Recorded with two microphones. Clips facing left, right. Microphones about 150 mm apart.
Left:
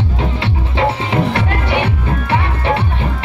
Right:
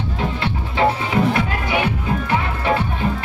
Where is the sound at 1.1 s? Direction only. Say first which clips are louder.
Left 1 dB; 70° left (ahead or behind).